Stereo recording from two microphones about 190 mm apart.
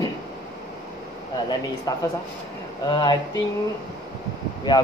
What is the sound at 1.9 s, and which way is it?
Speech, 20° left (ahead or behind).